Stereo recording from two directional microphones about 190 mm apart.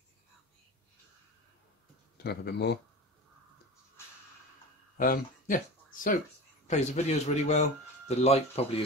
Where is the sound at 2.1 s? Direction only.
60° left (ahead or behind).